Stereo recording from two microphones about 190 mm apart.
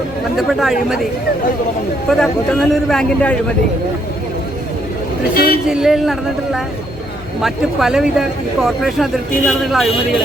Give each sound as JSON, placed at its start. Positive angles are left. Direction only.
{"t": 0.3, "sound": "speech", "side_deg": 0}
{"t": 2.0, "sound": "speech", "side_deg": 0}
{"t": 5.3, "sound": "speech", "side_deg": 55}
{"t": 5.6, "sound": "speech", "side_deg": -5}